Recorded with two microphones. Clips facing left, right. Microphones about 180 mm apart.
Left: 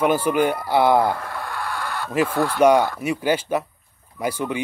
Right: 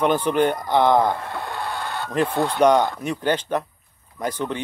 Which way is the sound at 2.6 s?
10° left (ahead or behind).